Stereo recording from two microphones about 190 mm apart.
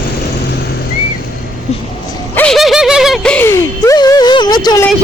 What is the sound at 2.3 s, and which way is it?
Music, 5° left (ahead or behind).